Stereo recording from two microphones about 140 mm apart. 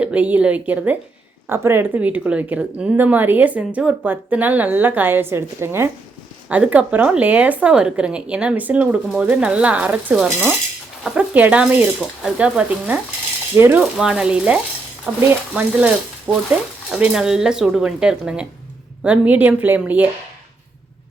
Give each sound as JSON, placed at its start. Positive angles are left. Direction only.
{"t": 0.0, "sound": "speech", "side_deg": -10}
{"t": 13.6, "sound": "speech", "side_deg": -20}
{"t": 13.8, "sound": "speech", "side_deg": -5}